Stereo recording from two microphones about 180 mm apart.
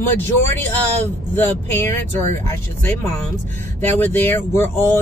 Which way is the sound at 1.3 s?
10° left (ahead or behind).